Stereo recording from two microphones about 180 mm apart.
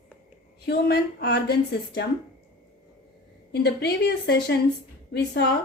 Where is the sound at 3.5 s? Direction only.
65° left (ahead or behind).